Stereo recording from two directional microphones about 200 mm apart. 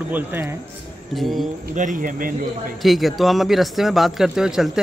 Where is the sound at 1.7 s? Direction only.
40° right (ahead or behind).